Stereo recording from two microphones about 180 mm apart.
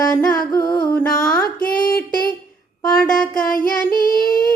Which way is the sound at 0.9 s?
5° left (ahead or behind).